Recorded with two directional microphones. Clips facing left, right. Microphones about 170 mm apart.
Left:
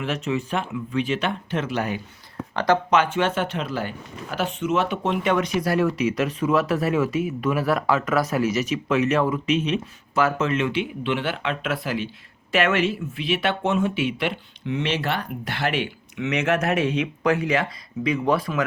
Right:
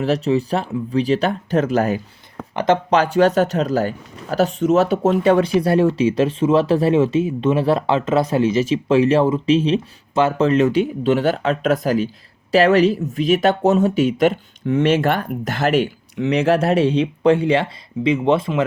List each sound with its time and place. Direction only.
0.0 s speech: 35° right (ahead or behind)